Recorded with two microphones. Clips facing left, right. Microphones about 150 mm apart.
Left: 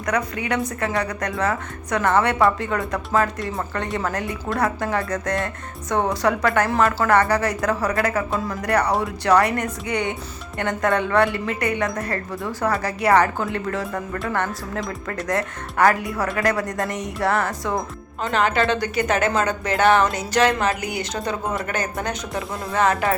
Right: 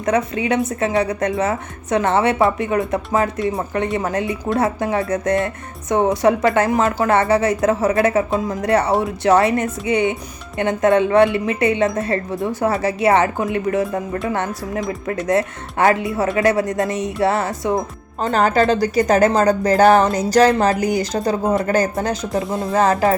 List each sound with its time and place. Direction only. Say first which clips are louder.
0.0 s a woman's voice: right 5 dB; 25° right (ahead or behind)
18.2 s a woman's voice: right 5 dB; 40° right (ahead or behind)